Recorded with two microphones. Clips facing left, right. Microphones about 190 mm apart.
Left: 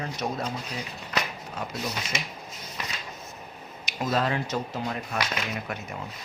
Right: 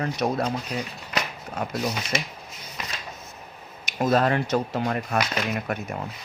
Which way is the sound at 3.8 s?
50° right (ahead or behind).